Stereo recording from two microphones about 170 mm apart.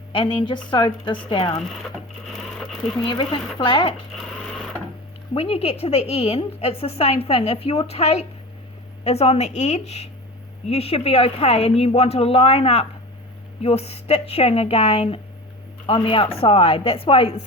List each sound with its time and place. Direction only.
0.1 s a woman's voice: 30° left (ahead or behind)
2.3 s a sound: centre (ahead or behind)
3.1 s a woman's voice: 30° left (ahead or behind)
5.3 s a woman's voice: 35° left (ahead or behind)